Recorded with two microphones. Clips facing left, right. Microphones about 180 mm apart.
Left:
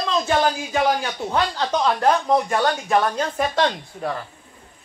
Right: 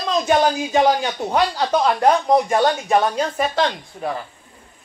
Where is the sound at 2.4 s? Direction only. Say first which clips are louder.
Right 3 dB; 20° right (ahead or behind).